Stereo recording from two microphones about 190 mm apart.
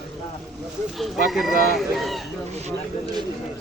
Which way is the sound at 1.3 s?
Centre (ahead or behind).